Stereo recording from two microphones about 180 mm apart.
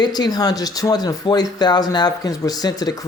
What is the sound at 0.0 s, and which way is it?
Speech, 25° left (ahead or behind).